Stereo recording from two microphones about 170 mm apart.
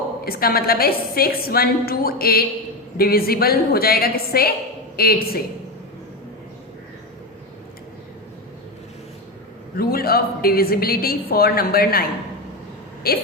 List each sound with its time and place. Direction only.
0.3 s a woman's voice: 65° left (ahead or behind)
9.7 s a woman's voice: 65° left (ahead or behind)
13.0 s a woman's voice: 60° left (ahead or behind)